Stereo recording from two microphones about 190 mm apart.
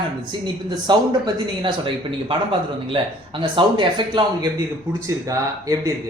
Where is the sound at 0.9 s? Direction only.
20° right (ahead or behind).